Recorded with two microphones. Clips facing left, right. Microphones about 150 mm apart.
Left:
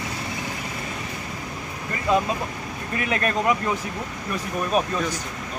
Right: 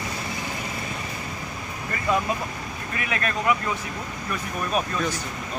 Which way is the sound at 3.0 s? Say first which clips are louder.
Left 4 dB; 40° left (ahead or behind).